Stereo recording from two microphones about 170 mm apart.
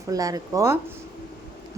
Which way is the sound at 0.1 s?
20° right (ahead or behind).